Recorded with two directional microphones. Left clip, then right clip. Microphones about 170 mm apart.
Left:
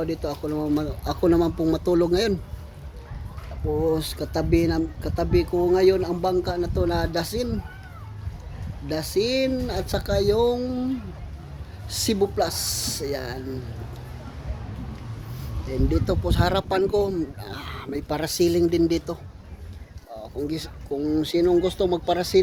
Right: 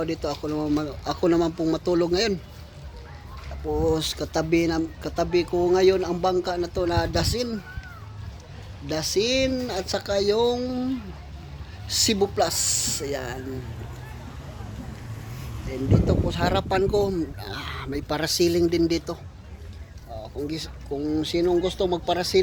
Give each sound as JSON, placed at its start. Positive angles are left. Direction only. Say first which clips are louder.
{"t": 0.0, "sound": "speech", "louder": "even", "side_deg": 5}
{"t": 3.8, "sound": "speech", "louder": "even", "side_deg": 5}
{"t": 8.9, "sound": "speech", "louder": "even", "side_deg": 5}
{"t": 11.9, "sound": "speech", "louder": "right 1 dB", "side_deg": 0}
{"t": 15.9, "sound": "speech", "louder": "right 2 dB", "side_deg": 25}
{"t": 20.5, "sound": "speech", "louder": "left 2 dB", "side_deg": 25}